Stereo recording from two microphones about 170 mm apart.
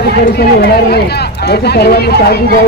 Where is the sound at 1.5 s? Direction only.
70° left (ahead or behind).